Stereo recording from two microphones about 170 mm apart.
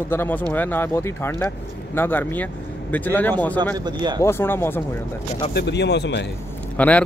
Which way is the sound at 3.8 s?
25° right (ahead or behind).